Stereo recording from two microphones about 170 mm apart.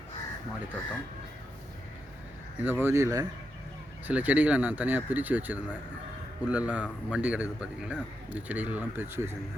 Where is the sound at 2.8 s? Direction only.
15° right (ahead or behind).